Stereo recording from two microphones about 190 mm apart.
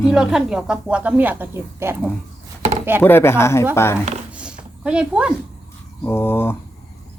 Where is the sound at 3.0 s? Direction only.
10° left (ahead or behind).